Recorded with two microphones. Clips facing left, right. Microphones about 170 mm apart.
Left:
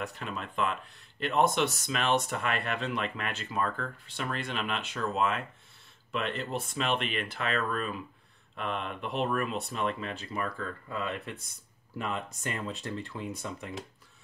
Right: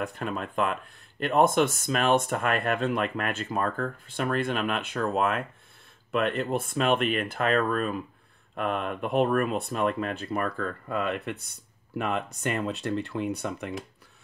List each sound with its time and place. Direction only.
0.0 s speech: 50° right (ahead or behind)